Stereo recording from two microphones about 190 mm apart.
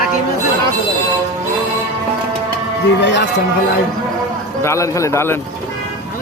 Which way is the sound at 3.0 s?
65° left (ahead or behind).